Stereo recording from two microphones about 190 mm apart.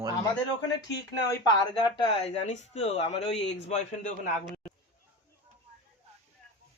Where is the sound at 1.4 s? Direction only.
25° left (ahead or behind).